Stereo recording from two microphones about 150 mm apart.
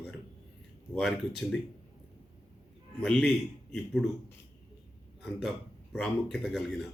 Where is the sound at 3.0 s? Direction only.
5° left (ahead or behind).